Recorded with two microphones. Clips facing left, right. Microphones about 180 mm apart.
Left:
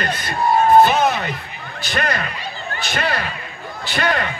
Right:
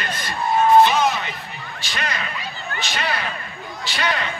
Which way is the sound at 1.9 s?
50° left (ahead or behind).